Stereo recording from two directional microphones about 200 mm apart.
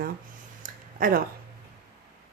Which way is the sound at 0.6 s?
45° right (ahead or behind).